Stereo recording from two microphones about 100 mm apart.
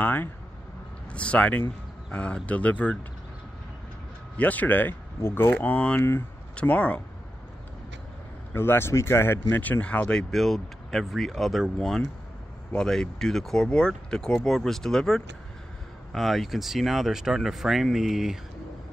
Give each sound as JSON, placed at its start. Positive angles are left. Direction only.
{"t": 0.0, "sound": "speech", "side_deg": 20}
{"t": 4.4, "sound": "speech", "side_deg": 15}
{"t": 8.5, "sound": "speech", "side_deg": 25}